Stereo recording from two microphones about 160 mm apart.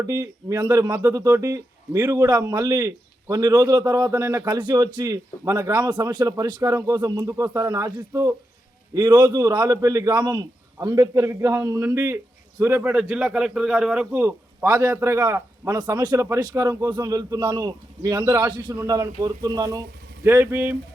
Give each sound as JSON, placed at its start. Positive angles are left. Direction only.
{"t": 0.0, "sound": "speech", "side_deg": -20}
{"t": 20.2, "sound": "speech", "side_deg": -15}